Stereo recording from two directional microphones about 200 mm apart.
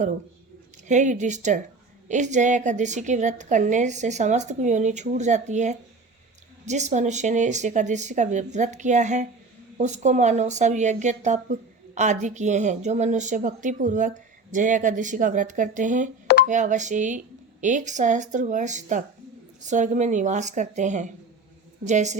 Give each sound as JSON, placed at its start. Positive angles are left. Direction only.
{"t": 0.9, "sound": "speech", "side_deg": -35}